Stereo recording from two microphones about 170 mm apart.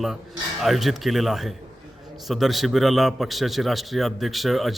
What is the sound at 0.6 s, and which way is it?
A man's voice, centre (ahead or behind).